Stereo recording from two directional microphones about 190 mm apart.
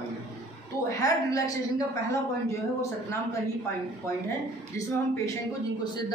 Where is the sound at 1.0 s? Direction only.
15° left (ahead or behind).